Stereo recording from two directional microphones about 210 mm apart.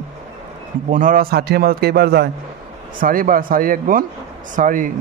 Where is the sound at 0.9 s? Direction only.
40° right (ahead or behind).